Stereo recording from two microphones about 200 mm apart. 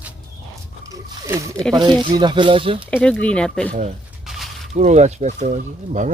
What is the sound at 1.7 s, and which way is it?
Speech, 20° right (ahead or behind).